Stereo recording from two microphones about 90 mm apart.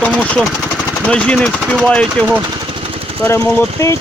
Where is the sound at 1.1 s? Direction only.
10° left (ahead or behind).